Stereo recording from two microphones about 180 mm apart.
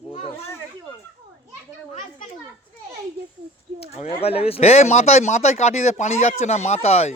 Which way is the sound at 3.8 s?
35° left (ahead or behind).